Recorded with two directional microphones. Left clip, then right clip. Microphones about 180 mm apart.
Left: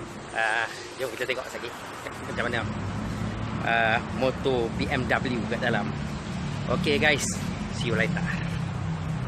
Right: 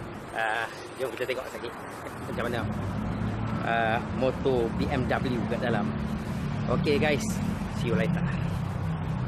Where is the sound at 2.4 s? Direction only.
5° left (ahead or behind).